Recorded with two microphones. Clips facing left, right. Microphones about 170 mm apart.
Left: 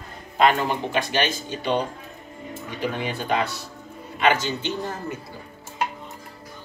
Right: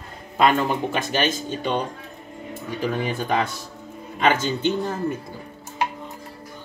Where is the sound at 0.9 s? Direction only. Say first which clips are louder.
Right 1 dB; 45° right (ahead or behind).